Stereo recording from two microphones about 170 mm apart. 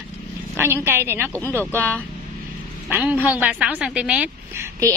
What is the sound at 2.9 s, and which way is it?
A woman's voice, 10° right (ahead or behind).